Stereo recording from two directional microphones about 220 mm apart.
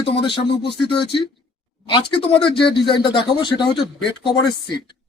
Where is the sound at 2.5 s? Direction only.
25° left (ahead or behind).